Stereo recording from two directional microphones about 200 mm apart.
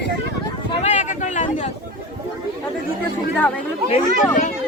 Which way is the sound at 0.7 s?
35° left (ahead or behind).